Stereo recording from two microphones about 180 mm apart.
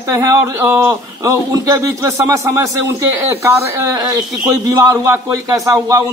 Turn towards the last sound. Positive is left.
turn(degrees=-15)  # may be behind; listen again after turning